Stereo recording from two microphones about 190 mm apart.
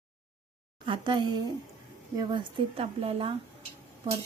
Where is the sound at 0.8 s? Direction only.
25° right (ahead or behind).